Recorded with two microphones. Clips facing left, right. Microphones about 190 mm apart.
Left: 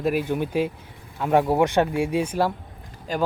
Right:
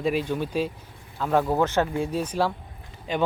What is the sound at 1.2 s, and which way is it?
Speech, 20° left (ahead or behind).